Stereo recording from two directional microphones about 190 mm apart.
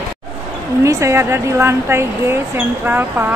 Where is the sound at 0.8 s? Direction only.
15° right (ahead or behind).